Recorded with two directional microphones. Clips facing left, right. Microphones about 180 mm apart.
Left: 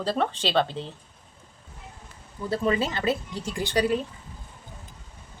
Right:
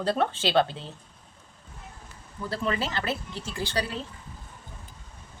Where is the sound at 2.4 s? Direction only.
20° left (ahead or behind).